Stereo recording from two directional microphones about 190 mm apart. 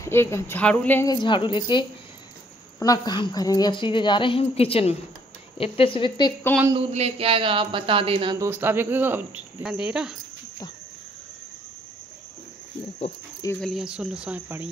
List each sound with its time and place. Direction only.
0.0 s speech: 15° left (ahead or behind)
1.0 s a woman's voice: 25° left (ahead or behind)
6.7 s speech: 35° right (ahead or behind)
8.5 s speech: 10° right (ahead or behind)
13.6 s speech: centre (ahead or behind)